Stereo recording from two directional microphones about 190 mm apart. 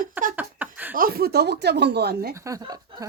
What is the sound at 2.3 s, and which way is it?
Speech, 15° right (ahead or behind).